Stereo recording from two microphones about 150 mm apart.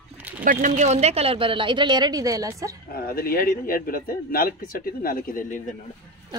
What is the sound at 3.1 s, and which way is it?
A man's voice, 80° left.